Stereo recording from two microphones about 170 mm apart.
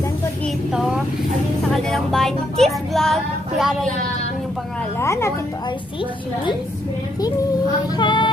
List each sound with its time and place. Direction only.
1.9 s music: 5° left (ahead or behind)
5.0 s speech: 15° left (ahead or behind)
8.0 s music: 25° left (ahead or behind)